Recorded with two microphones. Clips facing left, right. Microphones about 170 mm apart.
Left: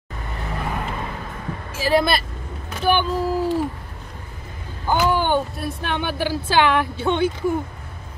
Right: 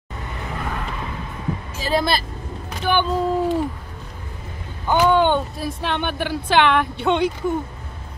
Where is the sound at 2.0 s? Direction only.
30° right (ahead or behind).